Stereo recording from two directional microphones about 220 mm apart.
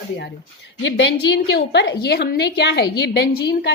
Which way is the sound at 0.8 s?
60° left (ahead or behind).